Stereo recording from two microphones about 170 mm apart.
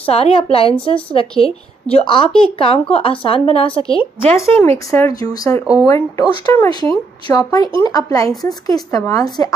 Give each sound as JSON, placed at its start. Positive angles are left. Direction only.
{"t": 0.0, "sound": "a woman's voice", "side_deg": 35}
{"t": 4.4, "sound": "speech", "side_deg": 15}